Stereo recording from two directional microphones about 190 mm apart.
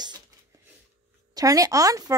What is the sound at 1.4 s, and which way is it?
Speech, 20° right (ahead or behind).